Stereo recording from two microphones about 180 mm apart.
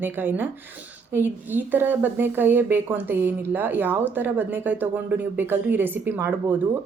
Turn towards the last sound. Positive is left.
turn(degrees=-10)  # may be behind; listen again after turning